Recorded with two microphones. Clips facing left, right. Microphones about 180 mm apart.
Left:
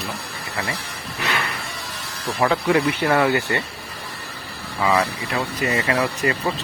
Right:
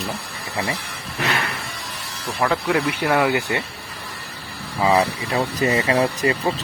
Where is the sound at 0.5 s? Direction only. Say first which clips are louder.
Right 3 dB; 20° right (ahead or behind).